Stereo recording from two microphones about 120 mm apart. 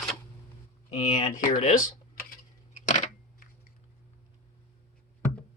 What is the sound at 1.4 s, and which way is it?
Speech, 90° left.